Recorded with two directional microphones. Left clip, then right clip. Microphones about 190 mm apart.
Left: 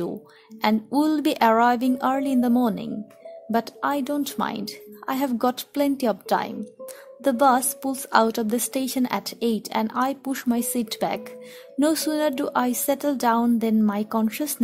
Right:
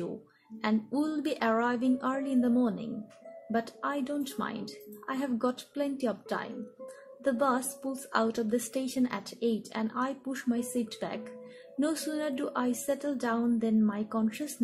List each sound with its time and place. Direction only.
0.6 s a woman's voice: 55° left (ahead or behind)